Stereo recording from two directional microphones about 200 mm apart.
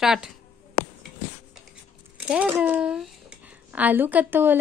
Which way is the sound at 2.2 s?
5° right (ahead or behind).